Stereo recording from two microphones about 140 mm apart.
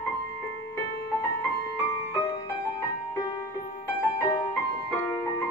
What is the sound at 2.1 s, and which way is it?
Music, 35° left (ahead or behind).